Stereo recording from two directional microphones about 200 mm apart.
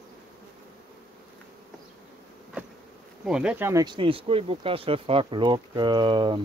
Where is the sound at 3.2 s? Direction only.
5° right (ahead or behind); by 6.4 s 25° right (ahead or behind).